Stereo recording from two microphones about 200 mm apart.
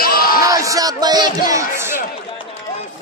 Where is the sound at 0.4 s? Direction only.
15° right (ahead or behind).